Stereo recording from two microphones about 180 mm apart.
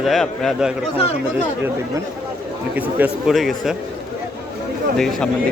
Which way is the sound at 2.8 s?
10° right (ahead or behind).